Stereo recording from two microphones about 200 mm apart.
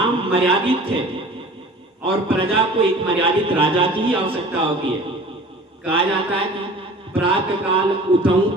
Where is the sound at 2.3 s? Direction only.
25° right (ahead or behind).